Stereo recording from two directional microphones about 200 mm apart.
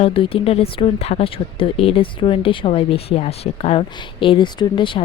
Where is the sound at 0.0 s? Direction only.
25° left (ahead or behind).